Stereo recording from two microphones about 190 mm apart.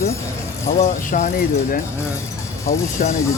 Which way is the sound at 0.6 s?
40° left (ahead or behind).